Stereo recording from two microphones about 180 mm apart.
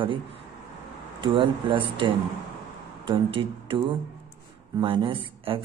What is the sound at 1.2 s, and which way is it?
Speech, 25° right (ahead or behind).